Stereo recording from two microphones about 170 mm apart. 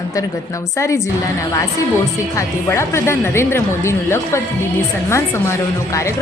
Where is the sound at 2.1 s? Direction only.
15° left (ahead or behind).